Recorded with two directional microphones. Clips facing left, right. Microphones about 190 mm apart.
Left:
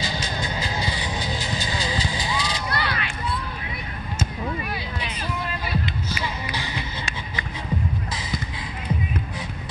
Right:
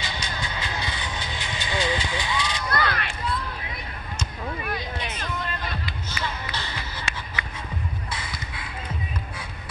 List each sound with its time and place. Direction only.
0.0 s vehicle: 35° left (ahead or behind)
2.7 s run: 50° right (ahead or behind)
5.2 s a sound: 10° left (ahead or behind)
6.0 s music: 10° left (ahead or behind)